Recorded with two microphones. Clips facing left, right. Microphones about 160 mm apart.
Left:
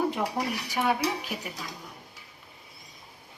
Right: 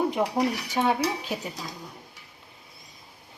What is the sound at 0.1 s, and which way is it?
Dishes, 15° right (ahead or behind).